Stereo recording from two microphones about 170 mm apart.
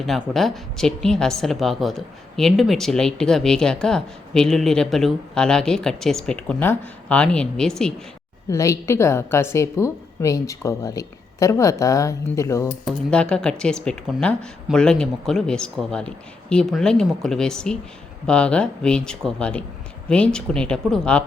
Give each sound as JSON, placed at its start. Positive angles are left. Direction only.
{"t": 0.0, "sound": "a woman's voice", "side_deg": 0}
{"t": 8.4, "sound": "a woman's voice", "side_deg": 20}
{"t": 12.8, "sound": "a woman's voice", "side_deg": 5}